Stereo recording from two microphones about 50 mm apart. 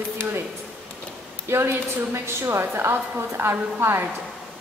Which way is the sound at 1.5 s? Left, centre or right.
Right.